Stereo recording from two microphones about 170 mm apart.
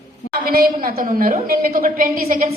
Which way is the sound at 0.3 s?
60° right (ahead or behind).